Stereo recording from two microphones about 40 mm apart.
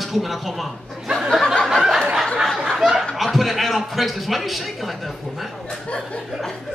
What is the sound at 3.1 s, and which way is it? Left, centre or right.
A man's voice, centre.